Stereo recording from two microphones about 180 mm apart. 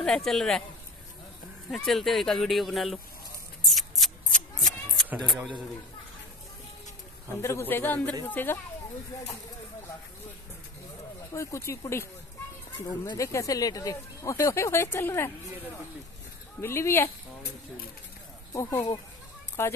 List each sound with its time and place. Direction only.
0.0 s speech: 5° left (ahead or behind)
1.7 s speech: centre (ahead or behind)
3.6 s scissors: centre (ahead or behind)
7.4 s speech: 15° left (ahead or behind)
11.3 s speech: 15° left (ahead or behind)
16.6 s speech: 15° left (ahead or behind)
18.5 s speech: 15° left (ahead or behind)